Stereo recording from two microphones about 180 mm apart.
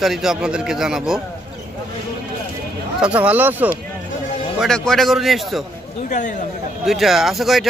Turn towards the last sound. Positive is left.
turn(degrees=0)  # may be behind; listen again after turning